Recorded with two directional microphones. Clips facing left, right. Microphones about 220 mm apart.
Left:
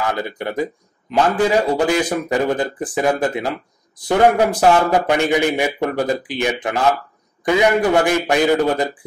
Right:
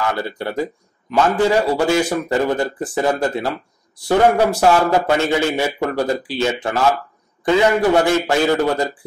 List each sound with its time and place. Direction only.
0.1 s a man's voice: 15° left (ahead or behind)